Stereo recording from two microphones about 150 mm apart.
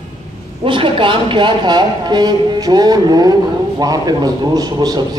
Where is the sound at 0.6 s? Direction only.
35° right (ahead or behind).